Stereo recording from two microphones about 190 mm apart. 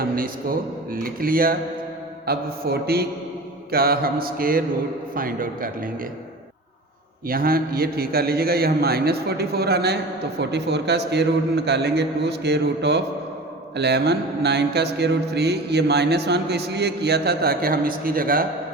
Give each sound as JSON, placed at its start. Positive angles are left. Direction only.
{"t": 0.0, "sound": "a man's voice", "side_deg": -50}
{"t": 0.9, "sound": "mantra", "side_deg": -50}
{"t": 2.2, "sound": "a man's voice", "side_deg": -55}
{"t": 3.7, "sound": "mantra", "side_deg": -55}
{"t": 7.3, "sound": "a man's voice", "side_deg": -50}